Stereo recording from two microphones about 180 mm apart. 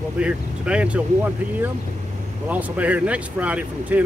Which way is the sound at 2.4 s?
10° right (ahead or behind).